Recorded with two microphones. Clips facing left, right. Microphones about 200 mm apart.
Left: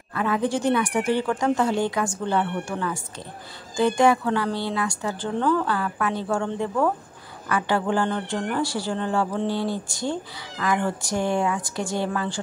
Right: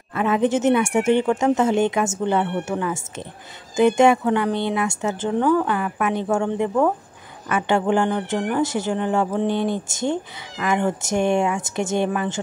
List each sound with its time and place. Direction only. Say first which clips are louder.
0.1 s speech: right 4 dB; 20° right (ahead or behind)